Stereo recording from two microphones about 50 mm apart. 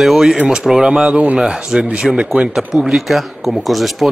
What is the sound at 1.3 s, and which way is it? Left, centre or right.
Speech, centre.